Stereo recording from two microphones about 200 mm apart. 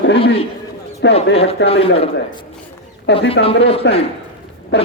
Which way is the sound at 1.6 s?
30° left (ahead or behind).